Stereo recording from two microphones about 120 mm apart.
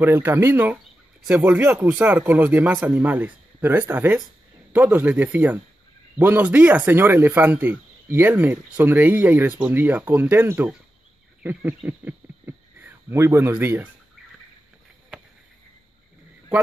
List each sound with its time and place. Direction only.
0.0 s speech: 20° right (ahead or behind)